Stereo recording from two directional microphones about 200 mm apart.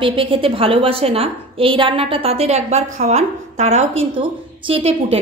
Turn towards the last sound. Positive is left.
turn(degrees=-30)  # may be behind; listen again after turning